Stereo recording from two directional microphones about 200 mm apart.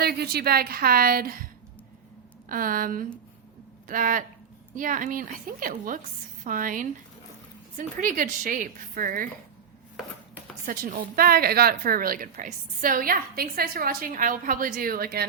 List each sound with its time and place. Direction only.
0.0 s a woman's voice: 50° right (ahead or behind)
2.5 s a woman's voice: 45° right (ahead or behind)
10.7 s a woman's voice: 45° right (ahead or behind)